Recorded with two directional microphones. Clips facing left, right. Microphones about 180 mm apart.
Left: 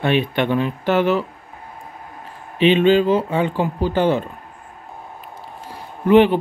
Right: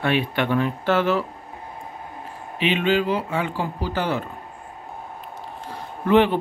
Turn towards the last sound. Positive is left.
turn(degrees=15)  # may be behind; listen again after turning